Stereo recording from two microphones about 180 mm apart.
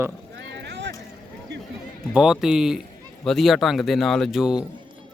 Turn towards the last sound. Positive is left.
turn(degrees=-5)  # may be behind; listen again after turning